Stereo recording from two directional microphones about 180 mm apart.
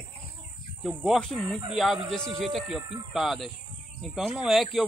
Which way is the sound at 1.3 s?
35° right (ahead or behind).